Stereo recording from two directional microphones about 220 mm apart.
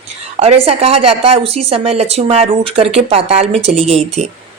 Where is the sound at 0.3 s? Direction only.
30° right (ahead or behind).